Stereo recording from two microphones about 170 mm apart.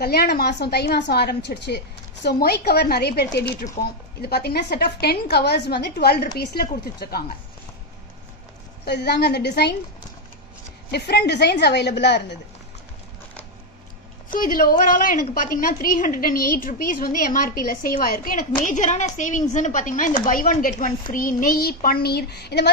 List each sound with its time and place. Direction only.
0.0 s a woman's voice: 70° left (ahead or behind)
2.2 s a woman's voice: 70° left (ahead or behind)
8.8 s a woman's voice: 75° left (ahead or behind)
10.9 s a woman's voice: 75° left (ahead or behind)
14.3 s a woman's voice: 55° left (ahead or behind); by 22.7 s 75° left (ahead or behind)